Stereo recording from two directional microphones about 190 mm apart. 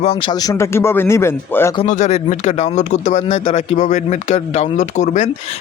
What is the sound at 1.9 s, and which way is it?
Speech, 35° left (ahead or behind).